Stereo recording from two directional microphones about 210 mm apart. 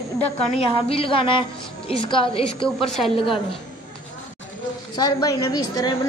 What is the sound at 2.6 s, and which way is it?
Speech, centre (ahead or behind).